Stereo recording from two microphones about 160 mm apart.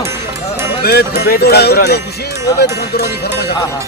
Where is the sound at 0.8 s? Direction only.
90° left.